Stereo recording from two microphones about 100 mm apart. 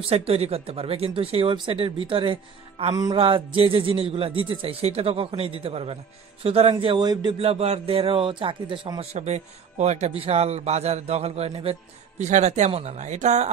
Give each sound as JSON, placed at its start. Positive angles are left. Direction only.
{"t": 0.1, "sound": "a man's voice", "side_deg": -85}
{"t": 2.9, "sound": "music", "side_deg": -40}
{"t": 3.2, "sound": "a man's voice", "side_deg": -60}
{"t": 7.3, "sound": "a man's voice", "side_deg": -85}
{"t": 9.1, "sound": "a man's voice", "side_deg": -90}
{"t": 10.1, "sound": "a man's voice", "side_deg": -80}